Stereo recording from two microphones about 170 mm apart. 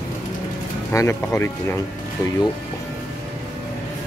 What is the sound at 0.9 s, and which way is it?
Speech, 15° left (ahead or behind).